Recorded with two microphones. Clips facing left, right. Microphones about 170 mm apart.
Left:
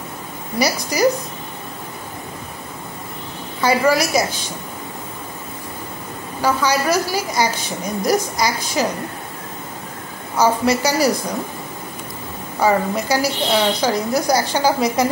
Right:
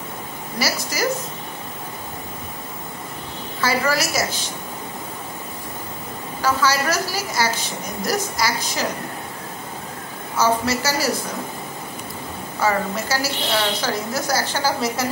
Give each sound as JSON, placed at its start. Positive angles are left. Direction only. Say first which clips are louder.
{"t": 0.6, "sound": "a woman's voice", "louder": "left 5 dB", "side_deg": 15}
{"t": 3.6, "sound": "a woman's voice", "louder": "left 5 dB", "side_deg": 15}
{"t": 6.4, "sound": "a woman's voice", "louder": "left 2 dB", "side_deg": 15}
{"t": 10.3, "sound": "a woman's voice", "louder": "left 3 dB", "side_deg": 15}
{"t": 12.5, "sound": "a woman's voice", "louder": "left 4 dB", "side_deg": 15}